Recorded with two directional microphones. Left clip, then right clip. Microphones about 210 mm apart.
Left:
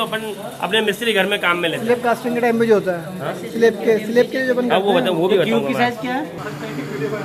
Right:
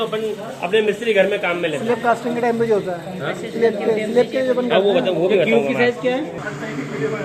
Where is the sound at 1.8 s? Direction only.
15° left (ahead or behind).